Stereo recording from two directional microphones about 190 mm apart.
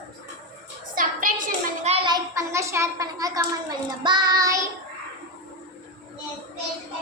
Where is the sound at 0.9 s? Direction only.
45° right (ahead or behind).